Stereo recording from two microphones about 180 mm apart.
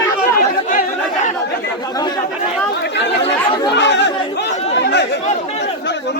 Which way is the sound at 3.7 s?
75° left (ahead or behind).